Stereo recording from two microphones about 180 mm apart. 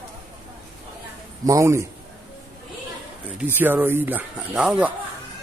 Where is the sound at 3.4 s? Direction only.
10° right (ahead or behind).